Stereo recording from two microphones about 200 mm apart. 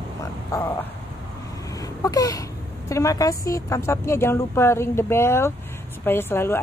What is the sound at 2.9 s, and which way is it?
Speech, 15° left (ahead or behind).